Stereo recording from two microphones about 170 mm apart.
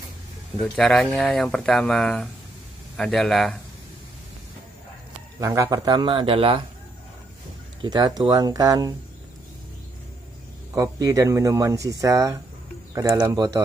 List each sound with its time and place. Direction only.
0.6 s speech: 5° left (ahead or behind)
5.4 s speech: 20° right (ahead or behind)
7.8 s speech: 25° right (ahead or behind)
10.7 s speech: 20° right (ahead or behind)